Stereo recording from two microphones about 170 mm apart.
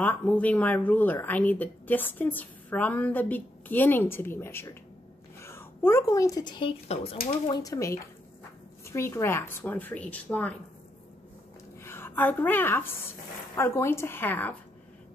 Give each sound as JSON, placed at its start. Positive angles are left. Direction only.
{"t": 0.0, "sound": "speech", "side_deg": 10}
{"t": 7.4, "sound": "speech", "side_deg": 20}
{"t": 11.8, "sound": "a woman's voice", "side_deg": 15}